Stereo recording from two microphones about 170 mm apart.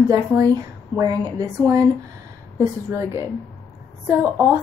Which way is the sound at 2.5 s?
15° right (ahead or behind).